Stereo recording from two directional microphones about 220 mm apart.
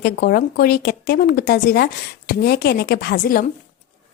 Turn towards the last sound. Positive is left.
turn(degrees=40)  # may be behind; listen again after turning